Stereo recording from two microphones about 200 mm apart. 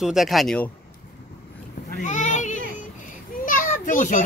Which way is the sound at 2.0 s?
35° left (ahead or behind).